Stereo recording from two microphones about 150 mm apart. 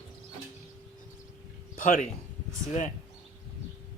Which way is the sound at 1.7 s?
60° left (ahead or behind).